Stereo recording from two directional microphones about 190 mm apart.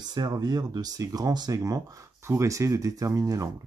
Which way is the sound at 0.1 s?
20° right (ahead or behind).